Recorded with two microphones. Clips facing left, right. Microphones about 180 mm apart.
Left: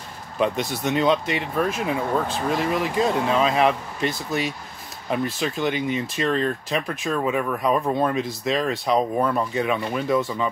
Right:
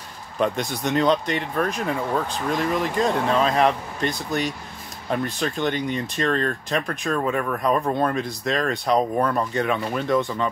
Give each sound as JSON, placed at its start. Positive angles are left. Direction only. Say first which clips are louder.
{"t": 0.4, "sound": "speech", "louder": "even", "side_deg": 0}